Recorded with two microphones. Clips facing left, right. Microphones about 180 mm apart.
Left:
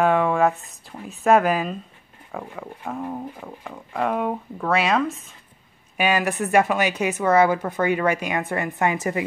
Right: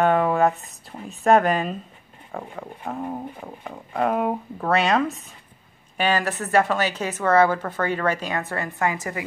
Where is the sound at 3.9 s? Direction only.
5° right (ahead or behind).